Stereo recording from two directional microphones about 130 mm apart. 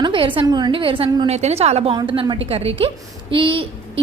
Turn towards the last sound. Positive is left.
turn(degrees=-40)  # may be behind; listen again after turning